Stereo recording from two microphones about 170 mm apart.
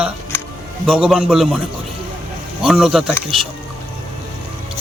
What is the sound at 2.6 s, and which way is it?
Speech, centre (ahead or behind).